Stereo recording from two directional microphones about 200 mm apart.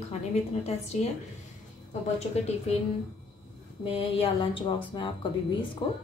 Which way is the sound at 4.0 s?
30° left (ahead or behind).